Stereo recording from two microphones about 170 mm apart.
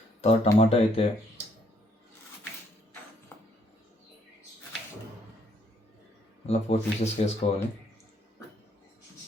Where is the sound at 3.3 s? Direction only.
10° left (ahead or behind).